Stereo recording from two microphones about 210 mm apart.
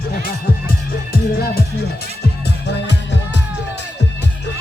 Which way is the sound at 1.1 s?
45° left (ahead or behind).